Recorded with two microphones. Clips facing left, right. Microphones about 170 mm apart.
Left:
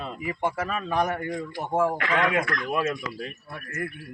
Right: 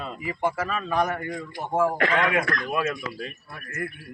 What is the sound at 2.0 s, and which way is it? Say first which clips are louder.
Speech: right 1 dB; 35° right (ahead or behind).